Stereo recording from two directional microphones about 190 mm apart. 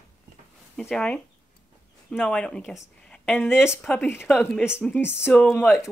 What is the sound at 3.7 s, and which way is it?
Speech, 5° left (ahead or behind).